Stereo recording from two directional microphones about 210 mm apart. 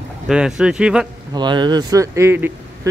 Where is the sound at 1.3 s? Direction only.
20° right (ahead or behind).